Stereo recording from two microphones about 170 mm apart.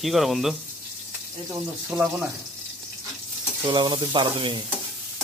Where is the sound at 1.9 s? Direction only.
15° right (ahead or behind).